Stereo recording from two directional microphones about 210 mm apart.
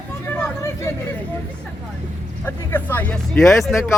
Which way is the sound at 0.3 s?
10° left (ahead or behind).